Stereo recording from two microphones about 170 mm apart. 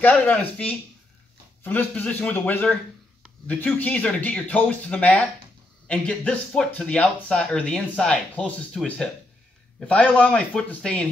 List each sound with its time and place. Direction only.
0.0 s speech: 10° left (ahead or behind)